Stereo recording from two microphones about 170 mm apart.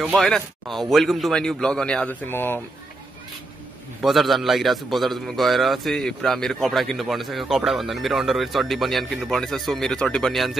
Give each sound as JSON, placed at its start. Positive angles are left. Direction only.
{"t": 0.0, "sound": "a man's voice", "side_deg": 0}
{"t": 4.0, "sound": "a man's voice", "side_deg": 0}